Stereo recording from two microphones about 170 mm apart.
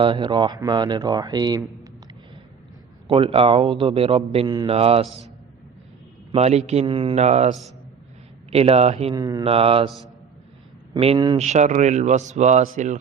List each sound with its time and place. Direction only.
0.0 s speech: 30° right (ahead or behind)
3.1 s a man's voice: 30° right (ahead or behind)
6.3 s a man's voice: 40° right (ahead or behind)
9.1 s speech: 20° right (ahead or behind)
9.4 s a man's voice: 35° right (ahead or behind)
10.9 s speech: 30° right (ahead or behind)
11.3 s a man's voice: 45° right (ahead or behind)